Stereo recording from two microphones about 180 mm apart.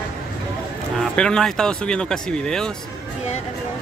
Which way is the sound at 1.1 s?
5° left (ahead or behind).